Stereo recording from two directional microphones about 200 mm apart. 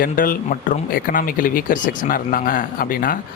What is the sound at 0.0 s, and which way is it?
Speech, 45° left (ahead or behind).